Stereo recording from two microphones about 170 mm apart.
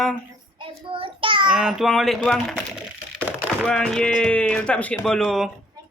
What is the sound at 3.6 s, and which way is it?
Speech, 5° left (ahead or behind).